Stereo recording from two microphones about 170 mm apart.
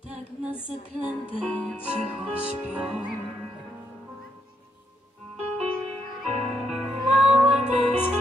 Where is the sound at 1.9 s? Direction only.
5° right (ahead or behind).